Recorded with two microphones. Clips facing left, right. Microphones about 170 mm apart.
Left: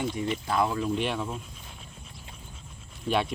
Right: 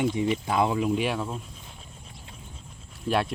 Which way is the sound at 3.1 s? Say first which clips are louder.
Right 1 dB; centre (ahead or behind).